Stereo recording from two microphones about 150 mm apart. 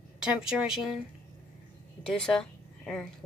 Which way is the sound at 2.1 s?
5° left (ahead or behind).